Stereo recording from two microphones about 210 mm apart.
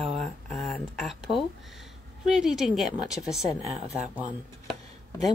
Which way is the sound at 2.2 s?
Centre (ahead or behind).